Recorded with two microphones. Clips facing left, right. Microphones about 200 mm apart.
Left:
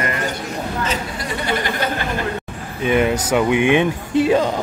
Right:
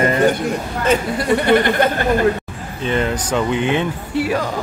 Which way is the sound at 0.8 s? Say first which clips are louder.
Right 7 dB; 55° right (ahead or behind).